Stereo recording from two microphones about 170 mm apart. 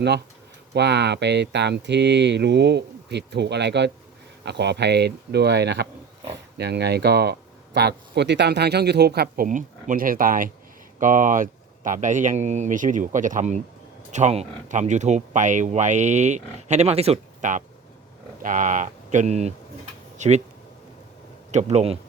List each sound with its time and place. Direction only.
0.7 s speech: 85° right; by 20.4 s 40° right (ahead or behind)
21.5 s speech: 40° right (ahead or behind)